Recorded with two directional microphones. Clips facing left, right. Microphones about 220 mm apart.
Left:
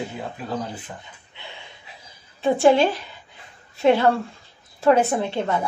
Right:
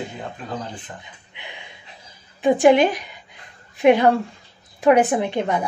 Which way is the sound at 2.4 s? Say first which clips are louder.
Right 2 dB; 15° right (ahead or behind).